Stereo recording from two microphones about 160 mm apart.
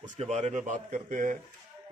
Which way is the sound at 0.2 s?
45° right (ahead or behind).